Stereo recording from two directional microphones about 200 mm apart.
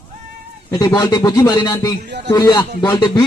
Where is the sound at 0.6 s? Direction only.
20° left (ahead or behind).